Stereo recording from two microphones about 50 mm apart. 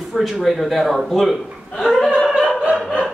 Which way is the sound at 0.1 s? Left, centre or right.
Centre.